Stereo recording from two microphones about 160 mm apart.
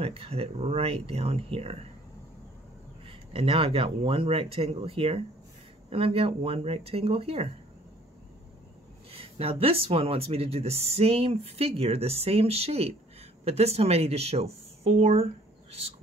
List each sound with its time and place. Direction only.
0.0 s speech: 35° right (ahead or behind)
3.1 s speech: 35° right (ahead or behind)
9.1 s speech: 35° right (ahead or behind)